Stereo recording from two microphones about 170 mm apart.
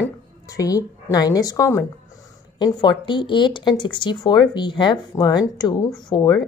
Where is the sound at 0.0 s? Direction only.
20° left (ahead or behind).